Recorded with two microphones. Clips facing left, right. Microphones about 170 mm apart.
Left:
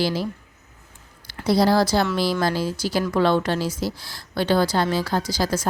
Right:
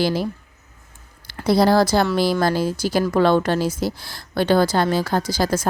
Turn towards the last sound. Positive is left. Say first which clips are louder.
# right 3 dB
turn(degrees=-50)  # may be behind; listen again after turning